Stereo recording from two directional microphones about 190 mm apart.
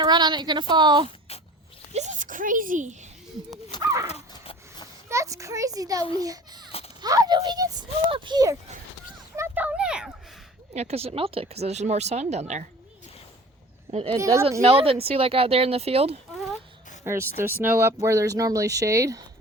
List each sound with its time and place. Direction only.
0.0 s a child's voice: 25° right (ahead or behind)
1.3 s a sound: 35° left (ahead or behind)
1.9 s speech: 40° right (ahead or behind)
3.7 s dog: 20° left (ahead or behind)
5.0 s a child's voice: 15° right (ahead or behind)
6.7 s a sound: 30° left (ahead or behind)
7.0 s a child's voice: 20° right (ahead or behind)
9.3 s a sound: 10° right (ahead or behind)
10.8 s speech: 35° right (ahead or behind)
13.9 s a child's voice: 30° right (ahead or behind)
14.2 s speech: 15° right (ahead or behind)
14.6 s speech: 30° right (ahead or behind)
17.0 s speech: 15° right (ahead or behind)